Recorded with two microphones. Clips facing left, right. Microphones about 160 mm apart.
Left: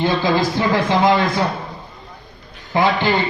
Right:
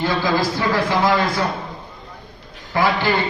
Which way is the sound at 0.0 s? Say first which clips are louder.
Left 2 dB; 20° left (ahead or behind).